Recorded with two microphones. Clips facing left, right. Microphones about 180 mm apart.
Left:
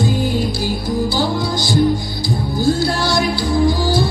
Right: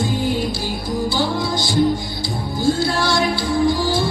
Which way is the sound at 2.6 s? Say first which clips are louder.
Left 1 dB; 40° left (ahead or behind).